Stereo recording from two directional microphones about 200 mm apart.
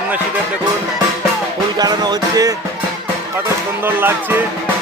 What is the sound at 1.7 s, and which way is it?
Speech, 20° right (ahead or behind).